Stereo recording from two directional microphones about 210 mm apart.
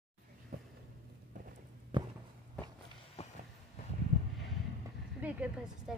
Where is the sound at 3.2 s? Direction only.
30° left (ahead or behind).